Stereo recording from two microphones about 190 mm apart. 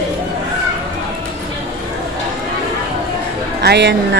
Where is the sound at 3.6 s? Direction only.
65° right (ahead or behind).